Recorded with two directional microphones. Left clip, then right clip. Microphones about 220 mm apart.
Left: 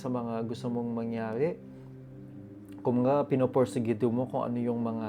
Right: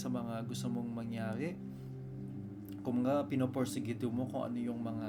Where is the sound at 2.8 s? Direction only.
35° left (ahead or behind).